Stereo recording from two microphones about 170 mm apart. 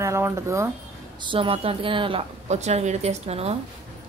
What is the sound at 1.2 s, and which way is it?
A woman's voice, 30° right (ahead or behind).